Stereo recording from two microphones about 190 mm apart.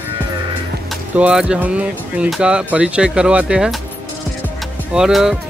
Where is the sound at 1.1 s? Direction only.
5° right (ahead or behind).